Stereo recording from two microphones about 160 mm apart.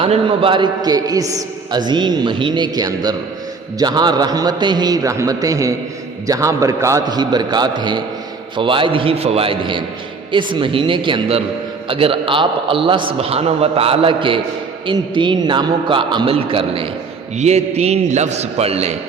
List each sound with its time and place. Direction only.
0.0 s a man's voice: 35° right (ahead or behind)